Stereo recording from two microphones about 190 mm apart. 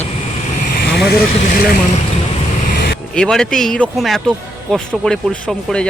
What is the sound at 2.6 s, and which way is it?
Vehicle, 60° left (ahead or behind).